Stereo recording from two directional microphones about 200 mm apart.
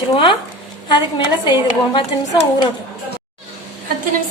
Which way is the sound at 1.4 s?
25° left (ahead or behind).